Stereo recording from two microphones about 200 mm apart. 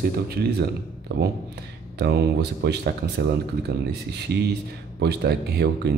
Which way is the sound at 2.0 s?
55° right (ahead or behind).